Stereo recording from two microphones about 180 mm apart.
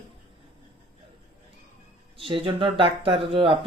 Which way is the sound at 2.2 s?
30° right (ahead or behind).